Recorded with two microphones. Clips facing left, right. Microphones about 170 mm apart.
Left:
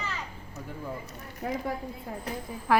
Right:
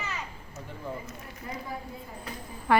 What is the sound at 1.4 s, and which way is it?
Speech, 80° left.